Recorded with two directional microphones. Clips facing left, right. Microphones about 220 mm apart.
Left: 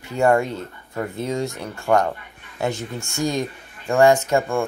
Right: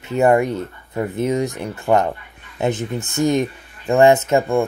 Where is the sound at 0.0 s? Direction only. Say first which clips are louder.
Right 3 dB; 20° right (ahead or behind).